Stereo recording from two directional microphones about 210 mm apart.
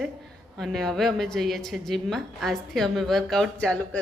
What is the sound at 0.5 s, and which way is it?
A woman's voice, centre (ahead or behind).